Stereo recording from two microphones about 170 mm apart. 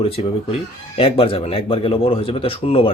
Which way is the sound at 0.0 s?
35° left (ahead or behind).